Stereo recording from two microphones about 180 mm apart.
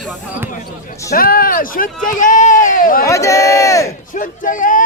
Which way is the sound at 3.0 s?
15° left (ahead or behind).